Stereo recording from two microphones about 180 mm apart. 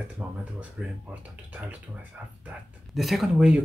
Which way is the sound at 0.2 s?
5° right (ahead or behind).